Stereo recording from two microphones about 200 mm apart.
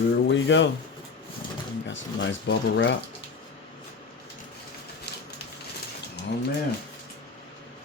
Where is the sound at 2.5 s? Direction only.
65° left (ahead or behind).